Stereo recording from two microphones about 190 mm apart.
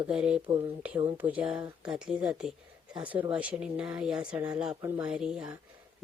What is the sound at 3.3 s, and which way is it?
A woman's voice, 5° right (ahead or behind).